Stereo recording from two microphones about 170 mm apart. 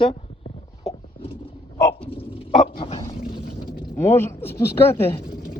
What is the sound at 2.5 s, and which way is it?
Dog, 45° left (ahead or behind).